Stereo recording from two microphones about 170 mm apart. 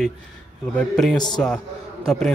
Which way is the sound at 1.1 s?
25° left (ahead or behind).